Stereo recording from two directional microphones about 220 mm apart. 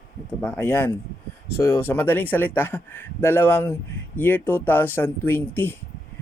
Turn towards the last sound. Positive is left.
turn(degrees=10)  # may be behind; listen again after turning